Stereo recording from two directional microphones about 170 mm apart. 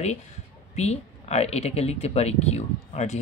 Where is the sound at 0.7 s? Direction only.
40° left (ahead or behind).